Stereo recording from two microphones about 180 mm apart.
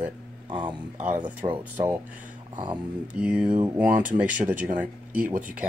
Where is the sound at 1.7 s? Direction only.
10° right (ahead or behind).